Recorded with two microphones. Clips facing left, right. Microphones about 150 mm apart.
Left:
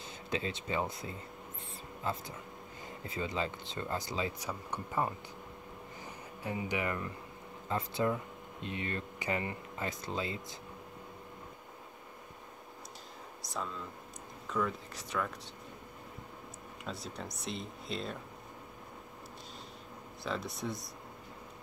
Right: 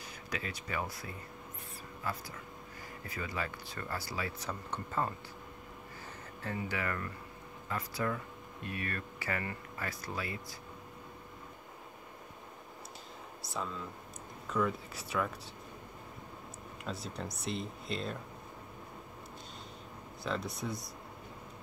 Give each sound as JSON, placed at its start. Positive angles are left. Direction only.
{"t": 0.3, "sound": "speech", "side_deg": 25}
{"t": 6.4, "sound": "speech", "side_deg": 15}
{"t": 13.5, "sound": "speech", "side_deg": 0}
{"t": 16.8, "sound": "speech", "side_deg": 0}
{"t": 20.2, "sound": "speech", "side_deg": 0}